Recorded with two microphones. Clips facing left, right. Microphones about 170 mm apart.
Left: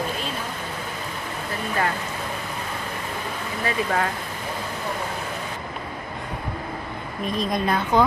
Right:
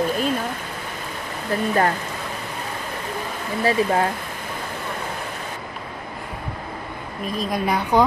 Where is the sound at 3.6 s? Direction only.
30° right (ahead or behind).